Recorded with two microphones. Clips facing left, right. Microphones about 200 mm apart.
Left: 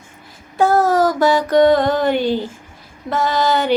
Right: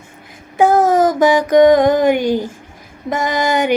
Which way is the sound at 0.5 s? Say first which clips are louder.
Right 2 dB; 20° right (ahead or behind).